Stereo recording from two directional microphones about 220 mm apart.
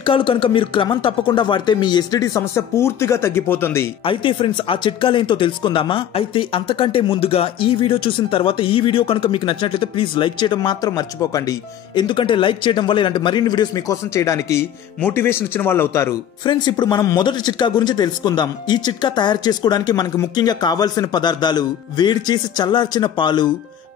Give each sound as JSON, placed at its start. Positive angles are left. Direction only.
{"t": 0.0, "sound": "speech", "side_deg": 25}
{"t": 4.0, "sound": "speech", "side_deg": 25}